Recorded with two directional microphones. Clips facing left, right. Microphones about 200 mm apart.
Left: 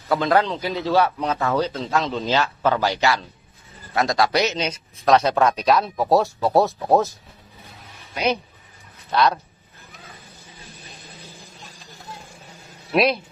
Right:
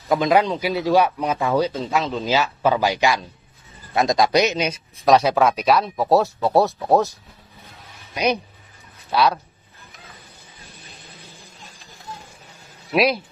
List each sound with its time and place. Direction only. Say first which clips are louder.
0.1 s a man's voice: right 2 dB; 15° right (ahead or behind)
8.1 s a man's voice: right 1 dB; 15° right (ahead or behind)
12.9 s speech: even; centre (ahead or behind)